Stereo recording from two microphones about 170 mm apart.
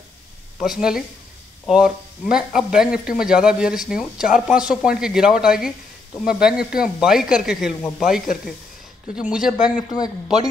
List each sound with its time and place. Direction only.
0.6 s speech: 5° right (ahead or behind)
9.1 s speech: 5° right (ahead or behind)
9.8 s a man's voice: 25° left (ahead or behind)